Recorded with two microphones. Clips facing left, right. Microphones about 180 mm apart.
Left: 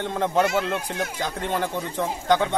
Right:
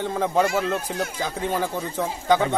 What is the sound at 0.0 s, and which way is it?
A man's voice, 5° right (ahead or behind).